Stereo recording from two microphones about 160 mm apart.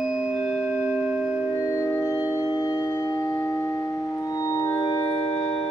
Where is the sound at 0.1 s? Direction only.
5° right (ahead or behind).